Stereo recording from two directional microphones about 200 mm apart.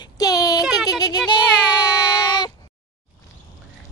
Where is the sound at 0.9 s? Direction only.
20° left (ahead or behind).